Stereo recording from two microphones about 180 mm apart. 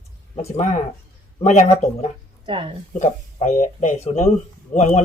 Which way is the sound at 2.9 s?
40° left (ahead or behind).